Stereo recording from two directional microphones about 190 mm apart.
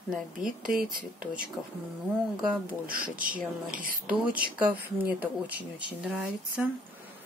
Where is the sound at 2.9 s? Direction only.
45° right (ahead or behind).